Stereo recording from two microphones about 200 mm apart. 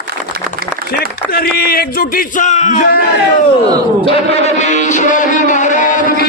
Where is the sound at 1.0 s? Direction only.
50° left (ahead or behind).